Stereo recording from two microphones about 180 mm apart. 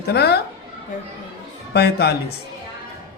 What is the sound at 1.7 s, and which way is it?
Speech, 65° left (ahead or behind).